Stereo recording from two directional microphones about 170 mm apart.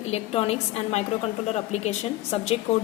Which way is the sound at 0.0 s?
35° left (ahead or behind).